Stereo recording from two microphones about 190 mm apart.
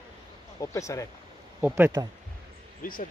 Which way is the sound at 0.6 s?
15° left (ahead or behind).